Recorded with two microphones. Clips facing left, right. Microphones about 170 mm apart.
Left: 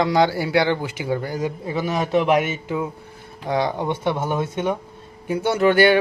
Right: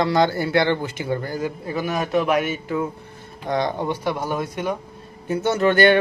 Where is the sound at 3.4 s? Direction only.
10° left (ahead or behind).